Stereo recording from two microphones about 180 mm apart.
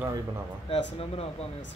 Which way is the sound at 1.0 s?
35° left (ahead or behind).